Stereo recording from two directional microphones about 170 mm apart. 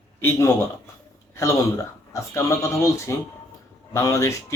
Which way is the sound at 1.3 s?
15° left (ahead or behind).